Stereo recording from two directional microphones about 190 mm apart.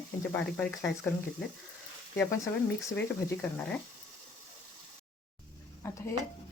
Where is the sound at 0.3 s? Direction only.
5° left (ahead or behind).